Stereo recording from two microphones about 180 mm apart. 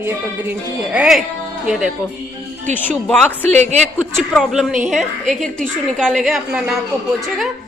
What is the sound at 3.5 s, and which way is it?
Speech, 40° right (ahead or behind).